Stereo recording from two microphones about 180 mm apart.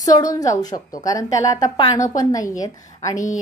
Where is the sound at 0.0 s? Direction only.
20° left (ahead or behind).